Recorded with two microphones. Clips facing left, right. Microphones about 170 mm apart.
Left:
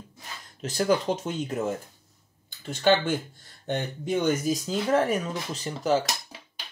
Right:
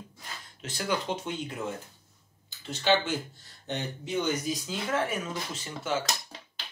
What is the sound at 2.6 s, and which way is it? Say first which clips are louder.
Speech: left 4 dB; 50° left (ahead or behind).